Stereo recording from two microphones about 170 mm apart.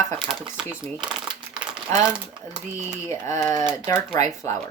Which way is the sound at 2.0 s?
5° right (ahead or behind).